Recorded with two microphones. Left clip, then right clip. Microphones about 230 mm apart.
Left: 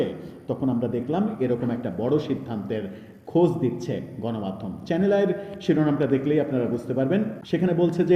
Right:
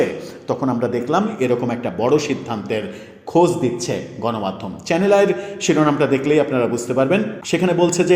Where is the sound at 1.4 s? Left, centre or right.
Right.